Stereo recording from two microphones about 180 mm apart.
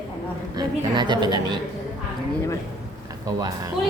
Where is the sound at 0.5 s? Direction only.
25° right (ahead or behind).